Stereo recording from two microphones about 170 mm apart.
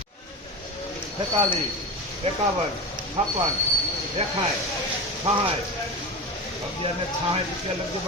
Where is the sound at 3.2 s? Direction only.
40° right (ahead or behind).